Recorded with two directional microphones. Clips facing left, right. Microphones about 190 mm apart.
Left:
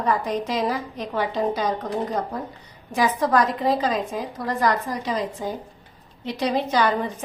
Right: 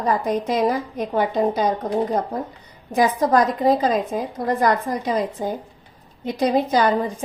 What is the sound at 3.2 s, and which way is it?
A woman's voice, 40° right (ahead or behind).